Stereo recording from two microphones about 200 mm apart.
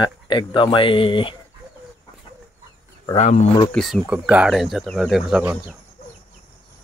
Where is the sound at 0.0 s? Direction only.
20° left (ahead or behind).